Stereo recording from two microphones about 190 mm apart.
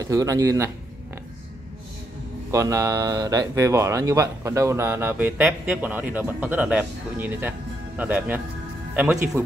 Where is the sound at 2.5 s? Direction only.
15° right (ahead or behind).